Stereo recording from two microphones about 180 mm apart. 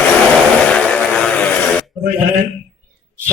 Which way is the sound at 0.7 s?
5° left (ahead or behind).